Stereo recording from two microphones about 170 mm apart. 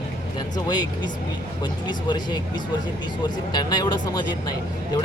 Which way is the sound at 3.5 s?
25° left (ahead or behind).